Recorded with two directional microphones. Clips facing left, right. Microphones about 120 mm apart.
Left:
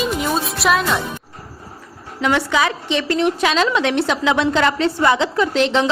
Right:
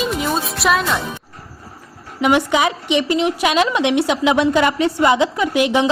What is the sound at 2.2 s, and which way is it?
A woman's voice, 15° right (ahead or behind).